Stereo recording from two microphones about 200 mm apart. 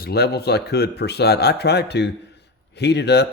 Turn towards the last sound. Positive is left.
turn(degrees=55)  # may be behind; listen again after turning